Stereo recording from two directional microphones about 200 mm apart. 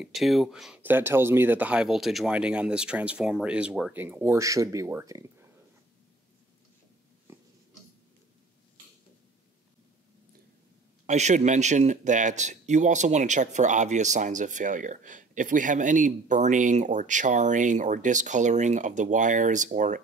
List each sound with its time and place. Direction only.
0.0 s speech: centre (ahead or behind)
11.1 s speech: 35° right (ahead or behind)